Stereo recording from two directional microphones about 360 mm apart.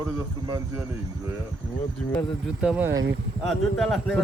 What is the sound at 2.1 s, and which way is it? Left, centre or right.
A man's voice, centre.